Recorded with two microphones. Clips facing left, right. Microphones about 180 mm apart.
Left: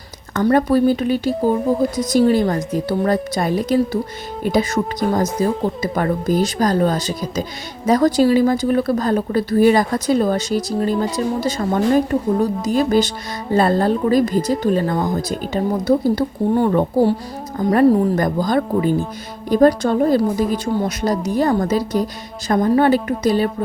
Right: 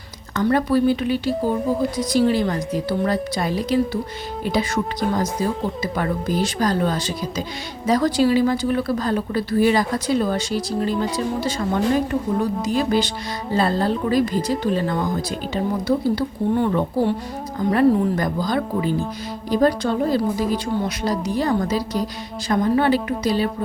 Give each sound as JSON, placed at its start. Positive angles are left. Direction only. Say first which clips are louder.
{"t": 0.3, "sound": "speech", "louder": "left 3 dB", "side_deg": 45}